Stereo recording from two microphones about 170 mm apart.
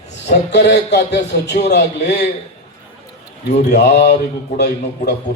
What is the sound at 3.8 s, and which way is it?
Music, 85° left.